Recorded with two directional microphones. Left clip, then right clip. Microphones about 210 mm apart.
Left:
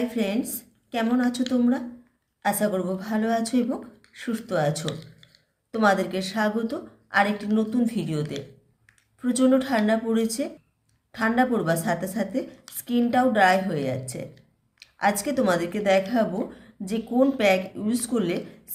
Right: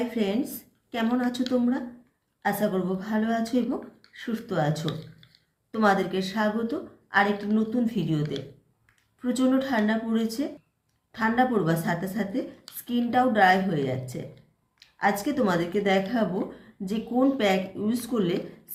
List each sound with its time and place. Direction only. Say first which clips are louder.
0.9 s speech: left 3 dB; 25° left (ahead or behind)
2.4 s speech: left 2 dB; 25° left (ahead or behind)
9.2 s speech: left 3 dB; 25° left (ahead or behind)